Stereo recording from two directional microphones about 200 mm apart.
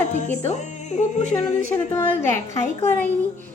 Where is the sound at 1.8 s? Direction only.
15° left (ahead or behind).